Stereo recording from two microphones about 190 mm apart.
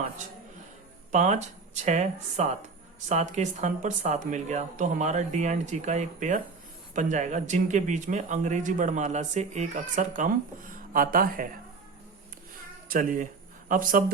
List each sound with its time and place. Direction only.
1.1 s speech: 40° right (ahead or behind)
12.9 s speech: 45° right (ahead or behind)